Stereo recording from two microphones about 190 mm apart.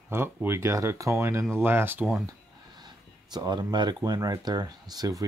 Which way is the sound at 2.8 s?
20° right (ahead or behind).